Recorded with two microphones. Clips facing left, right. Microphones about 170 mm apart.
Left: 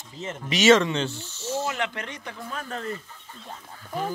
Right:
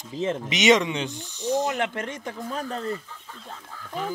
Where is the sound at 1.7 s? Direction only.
45° right (ahead or behind).